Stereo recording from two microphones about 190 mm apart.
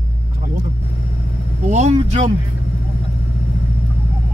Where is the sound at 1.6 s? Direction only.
40° right (ahead or behind).